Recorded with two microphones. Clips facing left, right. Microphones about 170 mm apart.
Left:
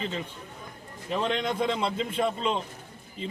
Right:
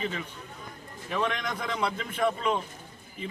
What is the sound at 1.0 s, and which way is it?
A man's voice, 25° left (ahead or behind).